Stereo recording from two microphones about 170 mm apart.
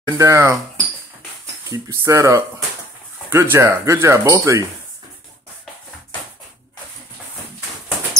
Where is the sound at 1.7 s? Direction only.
15° right (ahead or behind).